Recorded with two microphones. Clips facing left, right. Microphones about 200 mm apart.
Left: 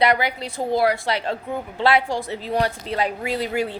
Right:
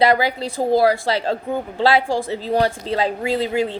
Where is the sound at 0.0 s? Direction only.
30° right (ahead or behind).